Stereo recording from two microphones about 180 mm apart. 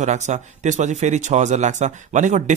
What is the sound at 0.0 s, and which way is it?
Speech, 40° right (ahead or behind).